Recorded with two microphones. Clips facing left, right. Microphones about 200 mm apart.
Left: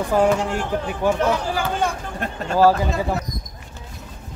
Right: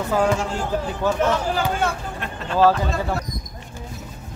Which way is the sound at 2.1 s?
45° left (ahead or behind).